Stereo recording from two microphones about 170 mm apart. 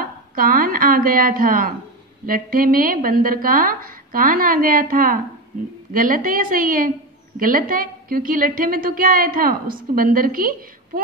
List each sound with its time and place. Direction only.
0.0 s a woman's voice: 55° right (ahead or behind)